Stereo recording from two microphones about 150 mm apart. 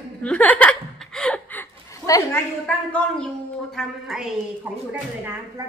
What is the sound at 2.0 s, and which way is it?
Speech, 20° left (ahead or behind).